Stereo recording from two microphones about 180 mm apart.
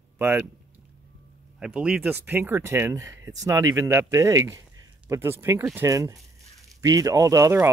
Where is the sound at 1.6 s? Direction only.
5° right (ahead or behind).